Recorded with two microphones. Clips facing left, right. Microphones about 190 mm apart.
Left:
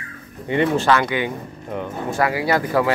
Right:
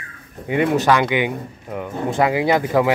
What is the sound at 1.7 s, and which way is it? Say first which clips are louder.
Speech: left 1 dB; 5° right (ahead or behind).